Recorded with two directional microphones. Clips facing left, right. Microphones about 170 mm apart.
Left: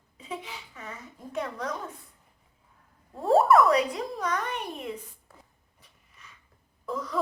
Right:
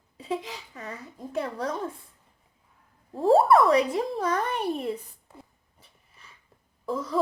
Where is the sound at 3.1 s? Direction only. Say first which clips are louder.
Right 1 dB; 30° right (ahead or behind).